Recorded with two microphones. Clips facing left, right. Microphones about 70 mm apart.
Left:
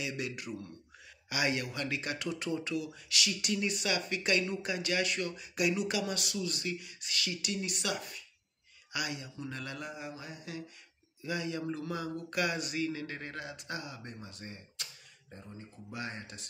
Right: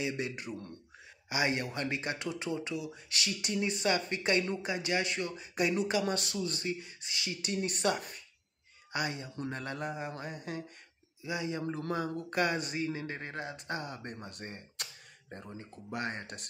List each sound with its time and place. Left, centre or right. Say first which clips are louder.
0.0 s speech: right 2 dB; right
7.5 s mantra: right 8 dB; right
11.2 s speech: even; right
11.8 s speech: right 3 dB; right